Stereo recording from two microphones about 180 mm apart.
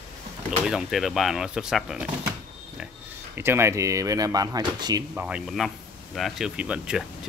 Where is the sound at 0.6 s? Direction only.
Centre (ahead or behind).